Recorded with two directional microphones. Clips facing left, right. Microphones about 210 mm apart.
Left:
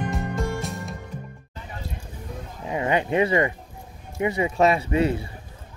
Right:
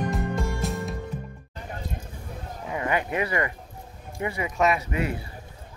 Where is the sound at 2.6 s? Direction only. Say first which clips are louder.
Left 4 dB; 20° left (ahead or behind).